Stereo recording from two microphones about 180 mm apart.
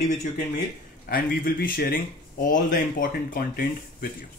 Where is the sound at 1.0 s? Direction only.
55° left (ahead or behind).